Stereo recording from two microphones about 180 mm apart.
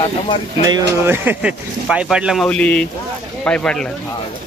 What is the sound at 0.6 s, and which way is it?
Speech, 15° right (ahead or behind).